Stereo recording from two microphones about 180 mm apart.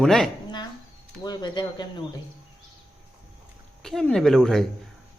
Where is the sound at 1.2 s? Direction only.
25° left (ahead or behind).